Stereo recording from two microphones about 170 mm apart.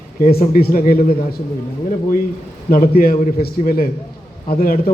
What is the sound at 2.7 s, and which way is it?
A man's voice, 60° left (ahead or behind).